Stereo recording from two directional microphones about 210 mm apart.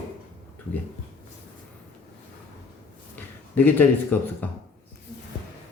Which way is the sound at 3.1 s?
10° left (ahead or behind).